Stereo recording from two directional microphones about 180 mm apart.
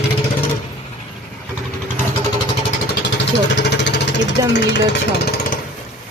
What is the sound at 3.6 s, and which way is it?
Jackhammer, 75° left (ahead or behind).